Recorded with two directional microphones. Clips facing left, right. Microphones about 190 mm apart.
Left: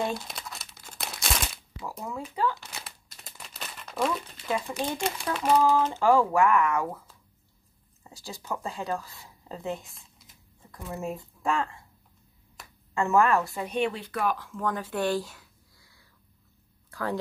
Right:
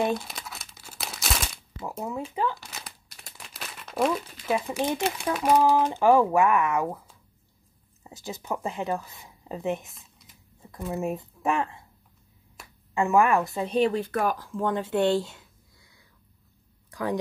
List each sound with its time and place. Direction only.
0.2 s crumpling: centre (ahead or behind)
1.8 s speech: 25° right (ahead or behind)
2.6 s crumpling: 5° right (ahead or behind)
4.0 s speech: 10° right (ahead or behind)
9.9 s computer keyboard: centre (ahead or behind)
10.7 s speech: 20° right (ahead or behind)
12.9 s speech: 15° right (ahead or behind)
13.7 s speech: 35° right (ahead or behind)
14.5 s a sound: 25° right (ahead or behind)
16.9 s speech: 15° right (ahead or behind)